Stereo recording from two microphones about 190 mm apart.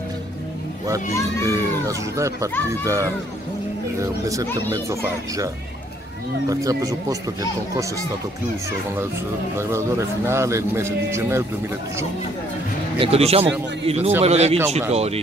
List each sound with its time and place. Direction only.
1.5 s a man's voice: 15° right (ahead or behind)
4.2 s a man's voice: 15° right (ahead or behind)
6.5 s a man's voice: 20° right (ahead or behind)
9.6 s a man's voice: 15° right (ahead or behind)
13.0 s a man's voice: 30° right (ahead or behind)